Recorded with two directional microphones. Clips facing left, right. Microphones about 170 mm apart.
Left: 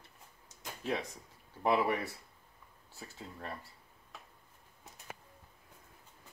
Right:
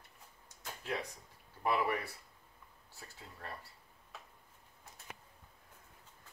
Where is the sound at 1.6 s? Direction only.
25° left (ahead or behind).